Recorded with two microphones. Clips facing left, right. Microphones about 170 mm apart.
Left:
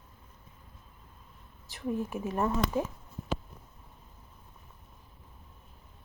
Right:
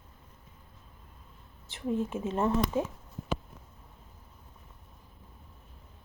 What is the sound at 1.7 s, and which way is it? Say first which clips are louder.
Speech: right 2 dB; 20° right (ahead or behind).